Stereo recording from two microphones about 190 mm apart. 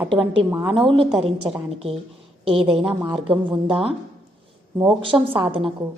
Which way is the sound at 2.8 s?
5° right (ahead or behind).